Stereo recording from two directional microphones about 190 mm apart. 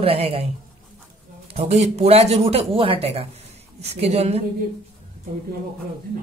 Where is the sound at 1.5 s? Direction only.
35° right (ahead or behind).